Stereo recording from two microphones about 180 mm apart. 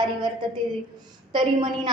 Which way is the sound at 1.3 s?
25° right (ahead or behind).